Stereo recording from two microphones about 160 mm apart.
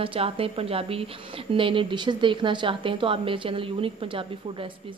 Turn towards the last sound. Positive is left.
turn(degrees=-35)  # may be behind; listen again after turning